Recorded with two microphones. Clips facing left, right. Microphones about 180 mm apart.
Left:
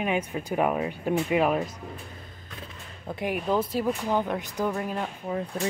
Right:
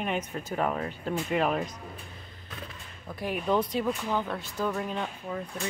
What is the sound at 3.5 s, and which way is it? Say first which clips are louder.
Speech: even; 5° left (ahead or behind).